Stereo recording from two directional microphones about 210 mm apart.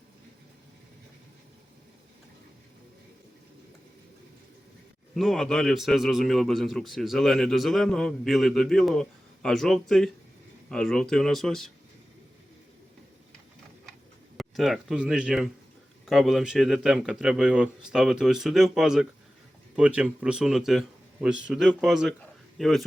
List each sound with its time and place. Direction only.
5.1 s a man's voice: centre (ahead or behind)
14.3 s a man's voice: centre (ahead or behind)